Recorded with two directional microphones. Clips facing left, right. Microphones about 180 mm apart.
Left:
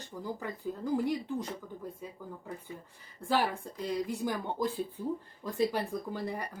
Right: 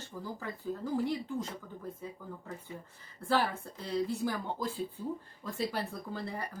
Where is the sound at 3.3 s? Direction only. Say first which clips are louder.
Left 1 dB; 15° left (ahead or behind).